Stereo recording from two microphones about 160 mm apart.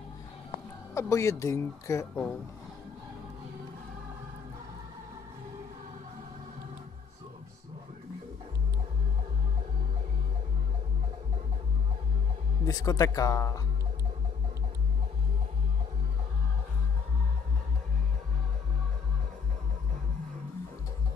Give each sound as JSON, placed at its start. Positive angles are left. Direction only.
{"t": 0.9, "sound": "speech", "side_deg": 20}
{"t": 12.6, "sound": "speech", "side_deg": 25}